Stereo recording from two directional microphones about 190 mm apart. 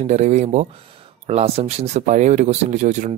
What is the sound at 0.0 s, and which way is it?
Speech, 40° right (ahead or behind).